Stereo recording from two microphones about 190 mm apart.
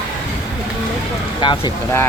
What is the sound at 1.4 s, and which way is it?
Speech, 25° left (ahead or behind).